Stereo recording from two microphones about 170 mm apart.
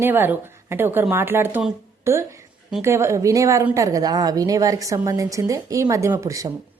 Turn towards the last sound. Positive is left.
turn(degrees=-20)  # may be behind; listen again after turning